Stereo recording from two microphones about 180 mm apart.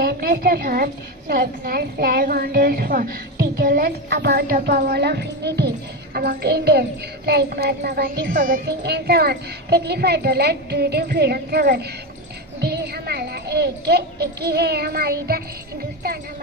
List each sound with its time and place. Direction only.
0.0 s a child's voice: 60° right (ahead or behind)